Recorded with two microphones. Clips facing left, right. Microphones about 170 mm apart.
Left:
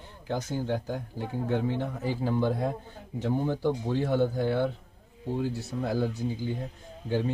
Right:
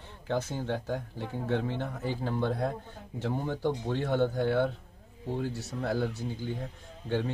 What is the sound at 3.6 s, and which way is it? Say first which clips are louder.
Speech: left 3 dB; 5° left (ahead or behind).